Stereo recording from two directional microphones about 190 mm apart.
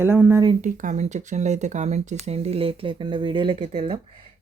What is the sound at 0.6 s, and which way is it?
Speech, 40° right (ahead or behind).